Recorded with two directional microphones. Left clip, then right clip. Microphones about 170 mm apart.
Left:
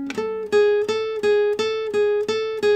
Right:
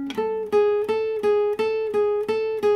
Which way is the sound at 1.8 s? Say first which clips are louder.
Left 2 dB; 45° left (ahead or behind).